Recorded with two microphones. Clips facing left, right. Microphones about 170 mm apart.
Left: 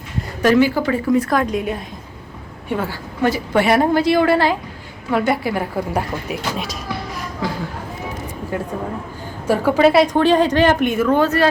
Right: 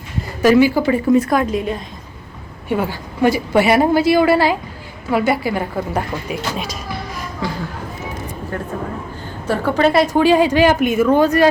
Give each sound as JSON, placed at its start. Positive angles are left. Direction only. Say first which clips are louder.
{"t": 0.4, "sound": "a woman's voice", "louder": "right 2 dB", "side_deg": -10}
{"t": 1.0, "sound": "a woman's voice", "louder": "right 3 dB", "side_deg": -25}
{"t": 1.3, "sound": "a woman's voice", "louder": "right 1 dB", "side_deg": -5}
{"t": 2.6, "sound": "a woman's voice", "louder": "right 3 dB", "side_deg": -10}
{"t": 8.5, "sound": "a woman's voice", "louder": "left 1 dB", "side_deg": 10}